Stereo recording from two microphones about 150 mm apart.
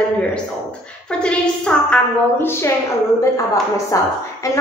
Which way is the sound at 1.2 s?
5° left (ahead or behind).